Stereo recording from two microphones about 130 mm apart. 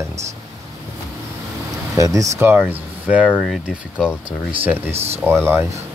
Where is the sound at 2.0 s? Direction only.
25° right (ahead or behind).